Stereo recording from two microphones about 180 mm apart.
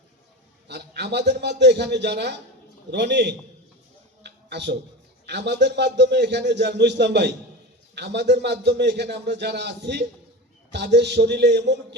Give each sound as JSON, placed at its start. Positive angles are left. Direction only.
{"t": 0.7, "sound": "a man's voice", "side_deg": -65}
{"t": 4.2, "sound": "a sound", "side_deg": -70}
{"t": 5.2, "sound": "a man's voice", "side_deg": -70}